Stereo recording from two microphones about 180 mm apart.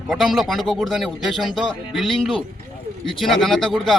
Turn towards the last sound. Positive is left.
turn(degrees=0)  # may be behind; listen again after turning